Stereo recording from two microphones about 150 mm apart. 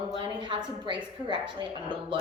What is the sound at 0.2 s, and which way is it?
A woman's voice, 35° right (ahead or behind).